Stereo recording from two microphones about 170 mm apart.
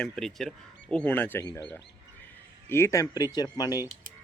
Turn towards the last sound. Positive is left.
turn(degrees=25)  # may be behind; listen again after turning